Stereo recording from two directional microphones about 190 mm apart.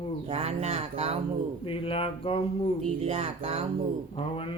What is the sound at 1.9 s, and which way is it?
Speech, 30° left (ahead or behind).